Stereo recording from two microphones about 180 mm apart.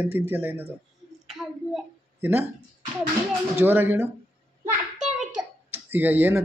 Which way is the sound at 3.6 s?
10° right (ahead or behind).